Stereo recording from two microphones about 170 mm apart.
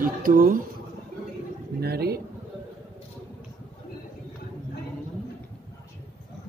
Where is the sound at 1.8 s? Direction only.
65° right (ahead or behind).